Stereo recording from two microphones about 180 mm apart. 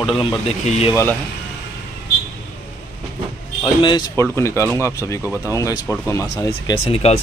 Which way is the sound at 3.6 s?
25° left (ahead or behind).